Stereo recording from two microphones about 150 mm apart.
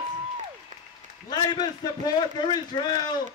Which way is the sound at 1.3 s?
30° left (ahead or behind).